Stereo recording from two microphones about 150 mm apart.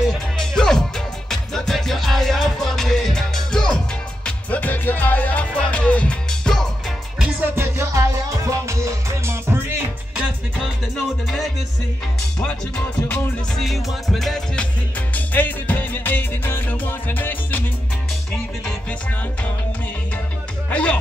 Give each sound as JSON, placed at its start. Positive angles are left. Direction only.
{"t": 0.0, "sound": "music", "side_deg": 5}
{"t": 7.5, "sound": "music", "side_deg": -15}
{"t": 12.4, "sound": "music", "side_deg": 5}
{"t": 20.7, "sound": "speech", "side_deg": 10}